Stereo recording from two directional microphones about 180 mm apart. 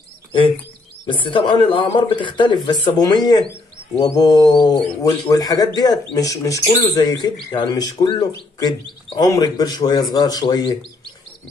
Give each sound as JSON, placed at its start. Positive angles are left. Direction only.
{"t": 1.0, "sound": "speech", "side_deg": 25}